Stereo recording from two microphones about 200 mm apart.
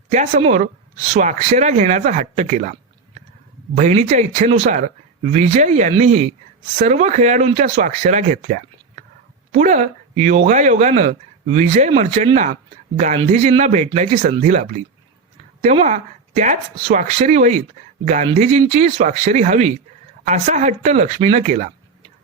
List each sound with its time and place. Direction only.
0.1 s speech: 35° right (ahead or behind)
3.8 s speech: 35° right (ahead or behind)